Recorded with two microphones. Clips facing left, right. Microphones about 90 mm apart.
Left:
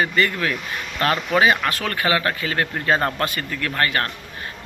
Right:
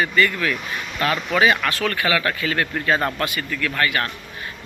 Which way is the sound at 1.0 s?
40° left (ahead or behind).